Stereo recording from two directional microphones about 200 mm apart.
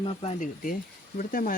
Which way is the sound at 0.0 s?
30° left (ahead or behind).